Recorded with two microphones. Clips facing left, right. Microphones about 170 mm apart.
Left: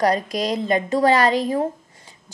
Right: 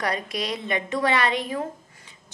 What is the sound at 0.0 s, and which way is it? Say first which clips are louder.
A woman's voice: left 8 dB; 40° left (ahead or behind).